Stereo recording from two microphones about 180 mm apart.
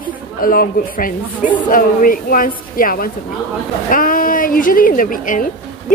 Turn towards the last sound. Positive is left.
turn(degrees=50)  # may be behind; listen again after turning